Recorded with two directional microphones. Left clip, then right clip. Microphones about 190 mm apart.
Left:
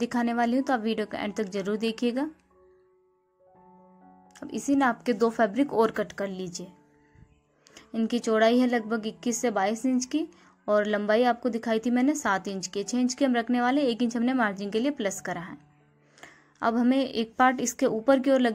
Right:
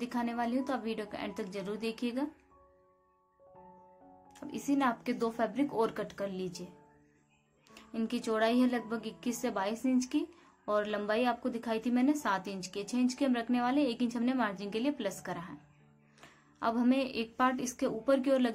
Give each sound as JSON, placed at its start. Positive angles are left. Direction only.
{"t": 0.0, "sound": "a woman's voice", "side_deg": 35}
{"t": 4.3, "sound": "a woman's voice", "side_deg": 30}
{"t": 7.7, "sound": "a woman's voice", "side_deg": 30}